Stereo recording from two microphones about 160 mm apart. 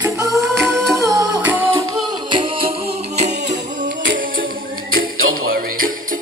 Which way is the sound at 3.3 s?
90° right.